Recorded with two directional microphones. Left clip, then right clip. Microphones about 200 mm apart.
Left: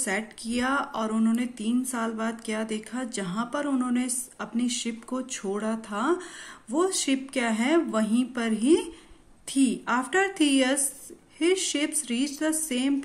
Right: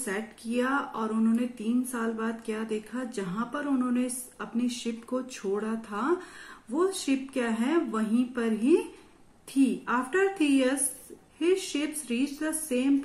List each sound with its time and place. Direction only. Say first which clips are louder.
0.0 s a woman's voice: left 4 dB; 50° left (ahead or behind)